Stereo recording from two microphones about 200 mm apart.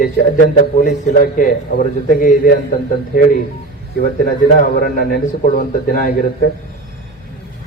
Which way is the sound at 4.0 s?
45° left (ahead or behind).